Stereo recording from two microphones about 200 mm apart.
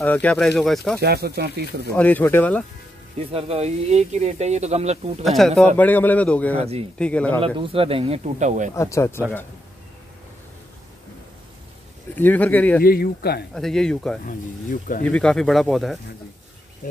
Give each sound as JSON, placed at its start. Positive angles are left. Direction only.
{"t": 0.0, "sound": "speech", "side_deg": 5}
{"t": 1.0, "sound": "speech", "side_deg": -55}
{"t": 2.0, "sound": "a man's voice", "side_deg": 10}
{"t": 3.2, "sound": "speech", "side_deg": -30}
{"t": 5.2, "sound": "a man's voice", "side_deg": 0}
{"t": 6.6, "sound": "speech", "side_deg": -30}
{"t": 7.0, "sound": "a man's voice", "side_deg": 5}
{"t": 7.3, "sound": "speech", "side_deg": -25}
{"t": 8.7, "sound": "a man's voice", "side_deg": 15}
{"t": 12.2, "sound": "a man's voice", "side_deg": 10}
{"t": 12.8, "sound": "speech", "side_deg": 50}
{"t": 13.6, "sound": "speech", "side_deg": 0}
{"t": 14.2, "sound": "speech", "side_deg": 45}
{"t": 15.0, "sound": "speech", "side_deg": 5}